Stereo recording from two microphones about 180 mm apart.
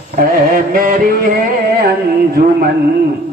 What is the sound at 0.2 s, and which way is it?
Mantra, 55° right (ahead or behind).